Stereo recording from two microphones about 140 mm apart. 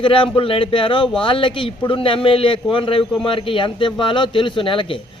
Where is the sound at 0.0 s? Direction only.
40° left (ahead or behind).